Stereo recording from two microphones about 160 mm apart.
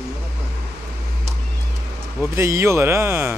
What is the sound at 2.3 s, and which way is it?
Speech, 15° right (ahead or behind).